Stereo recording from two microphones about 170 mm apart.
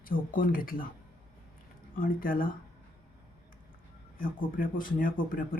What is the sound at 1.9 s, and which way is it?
Speech, 55° left (ahead or behind).